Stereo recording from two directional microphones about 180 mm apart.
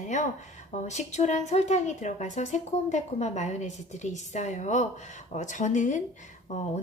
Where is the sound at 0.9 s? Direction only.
40° left (ahead or behind).